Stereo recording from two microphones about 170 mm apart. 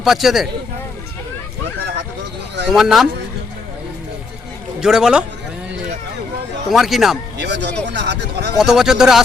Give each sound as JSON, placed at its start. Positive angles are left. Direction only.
{"t": 0.0, "sound": "speech", "side_deg": 0}
{"t": 2.6, "sound": "speech", "side_deg": 0}
{"t": 4.8, "sound": "speech", "side_deg": -5}
{"t": 6.7, "sound": "speech", "side_deg": 0}
{"t": 7.3, "sound": "speech", "side_deg": -85}
{"t": 8.5, "sound": "speech", "side_deg": -5}